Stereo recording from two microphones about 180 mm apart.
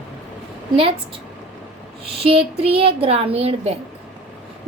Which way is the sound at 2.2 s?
30° right (ahead or behind).